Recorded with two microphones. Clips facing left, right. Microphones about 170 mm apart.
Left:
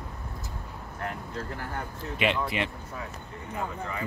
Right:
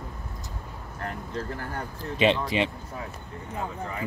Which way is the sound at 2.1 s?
25° right (ahead or behind).